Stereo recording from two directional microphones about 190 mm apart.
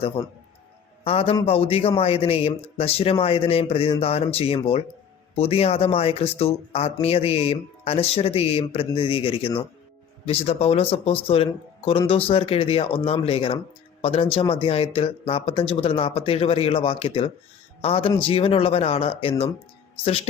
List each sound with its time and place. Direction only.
0.2 s speech: 15° left (ahead or behind)
1.0 s speech: 30° left (ahead or behind)